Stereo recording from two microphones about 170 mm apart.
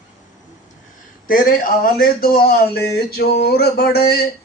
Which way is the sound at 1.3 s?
55° left (ahead or behind).